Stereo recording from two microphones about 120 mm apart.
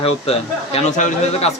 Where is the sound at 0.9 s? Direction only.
75° left (ahead or behind).